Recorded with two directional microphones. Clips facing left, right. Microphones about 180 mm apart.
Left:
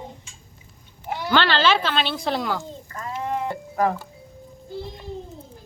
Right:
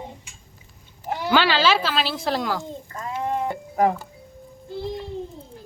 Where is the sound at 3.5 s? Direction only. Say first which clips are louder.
Right 3 dB; 20° right (ahead or behind).